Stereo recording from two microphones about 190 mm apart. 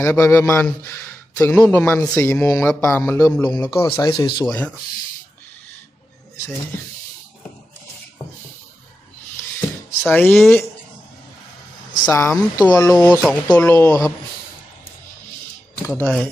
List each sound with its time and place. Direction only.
0.0 s speech: 15° left (ahead or behind)
4.4 s speech: 10° left (ahead or behind)
10.1 s speech: 10° left (ahead or behind)
12.0 s speech: 15° left (ahead or behind)
12.9 s speech: 5° left (ahead or behind)
16.0 s speech: 5° left (ahead or behind)